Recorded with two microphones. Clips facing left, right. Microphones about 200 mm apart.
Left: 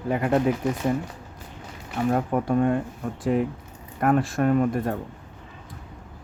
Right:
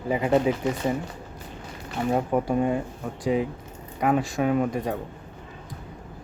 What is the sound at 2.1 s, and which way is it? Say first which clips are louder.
Speech: even; centre (ahead or behind).